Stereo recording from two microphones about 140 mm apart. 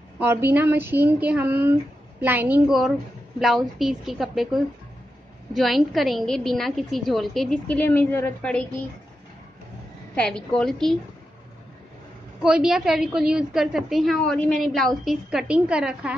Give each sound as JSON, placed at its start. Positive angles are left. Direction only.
{"t": 0.2, "sound": "a woman's voice", "side_deg": -15}
{"t": 10.1, "sound": "a woman's voice", "side_deg": 5}
{"t": 12.4, "sound": "a woman's voice", "side_deg": -5}